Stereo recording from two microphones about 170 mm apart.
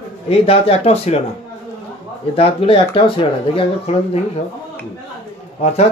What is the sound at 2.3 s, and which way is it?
Speech, 35° left (ahead or behind).